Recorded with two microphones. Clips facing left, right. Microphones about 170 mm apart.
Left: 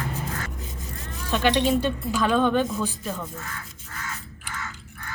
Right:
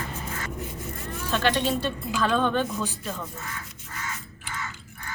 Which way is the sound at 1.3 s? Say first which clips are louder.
Left 3 dB; 15° left (ahead or behind).